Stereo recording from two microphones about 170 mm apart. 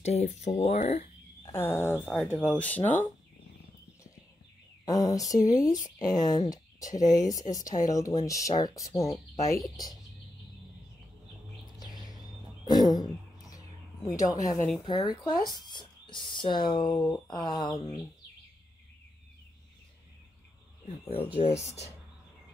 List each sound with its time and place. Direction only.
0.0 s speech: 40° left (ahead or behind)
1.4 s speech: 15° left (ahead or behind)
4.8 s speech: 20° left (ahead or behind)
9.1 s speech: centre (ahead or behind)
12.6 s a sound: 25° left (ahead or behind)
14.0 s speech: 20° left (ahead or behind)
20.8 s speech: 35° left (ahead or behind)